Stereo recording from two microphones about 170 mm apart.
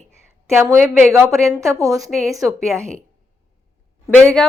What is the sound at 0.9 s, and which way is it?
Speech, 10° right (ahead or behind).